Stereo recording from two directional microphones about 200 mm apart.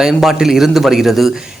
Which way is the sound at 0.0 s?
Centre (ahead or behind).